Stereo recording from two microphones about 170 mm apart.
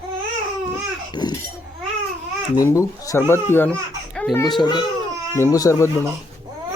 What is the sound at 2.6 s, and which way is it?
Speech, 20° left (ahead or behind).